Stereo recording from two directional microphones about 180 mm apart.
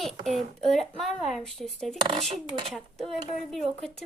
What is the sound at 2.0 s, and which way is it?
Speech, 30° right (ahead or behind).